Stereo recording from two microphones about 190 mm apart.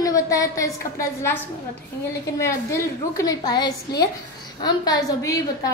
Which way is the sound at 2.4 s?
15° left (ahead or behind).